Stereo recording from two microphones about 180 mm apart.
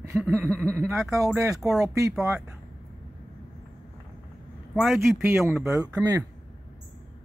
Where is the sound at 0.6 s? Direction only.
10° right (ahead or behind).